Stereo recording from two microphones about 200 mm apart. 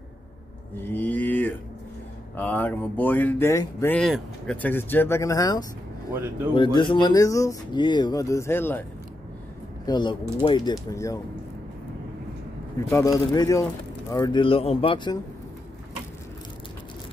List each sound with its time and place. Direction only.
0.7 s mantra: 10° left (ahead or behind)
2.3 s speech: 10° left (ahead or behind)
9.8 s speech: 20° left (ahead or behind)
12.9 s speech: 15° left (ahead or behind)